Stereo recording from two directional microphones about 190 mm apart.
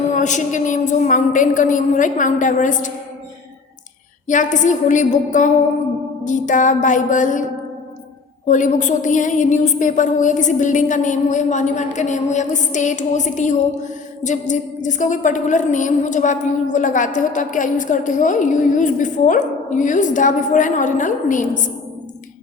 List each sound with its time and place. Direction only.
0.1 s a woman's voice: 40° left (ahead or behind)
4.3 s a woman's voice: 40° left (ahead or behind)
8.4 s a woman's voice: 40° left (ahead or behind)